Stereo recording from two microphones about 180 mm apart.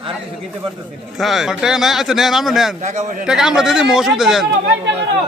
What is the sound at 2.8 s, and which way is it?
Speech, 40° right (ahead or behind).